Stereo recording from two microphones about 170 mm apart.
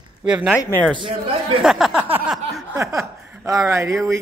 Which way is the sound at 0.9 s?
30° right (ahead or behind).